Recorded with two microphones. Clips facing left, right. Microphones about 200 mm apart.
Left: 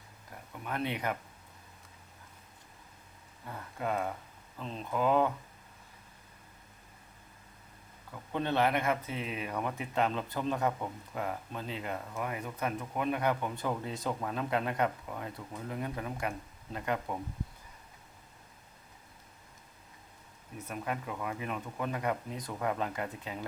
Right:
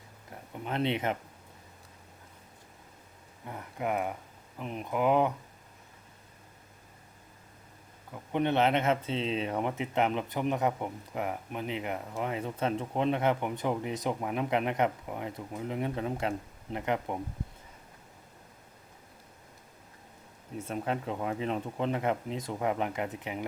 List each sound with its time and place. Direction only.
0.5 s speech: 25° right (ahead or behind)
3.4 s speech: 20° right (ahead or behind)
8.1 s speech: 20° right (ahead or behind)
20.6 s speech: 25° right (ahead or behind)